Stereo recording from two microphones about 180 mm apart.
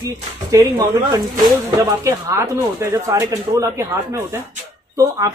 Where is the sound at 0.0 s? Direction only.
20° right (ahead or behind).